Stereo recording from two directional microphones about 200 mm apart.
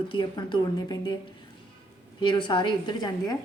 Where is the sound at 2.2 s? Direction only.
25° left (ahead or behind).